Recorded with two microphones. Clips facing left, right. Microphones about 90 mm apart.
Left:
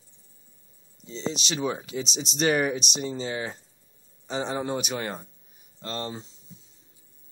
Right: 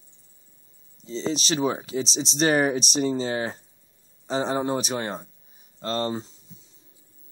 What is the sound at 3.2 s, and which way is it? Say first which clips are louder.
Speech: right 4 dB; 50° right (ahead or behind).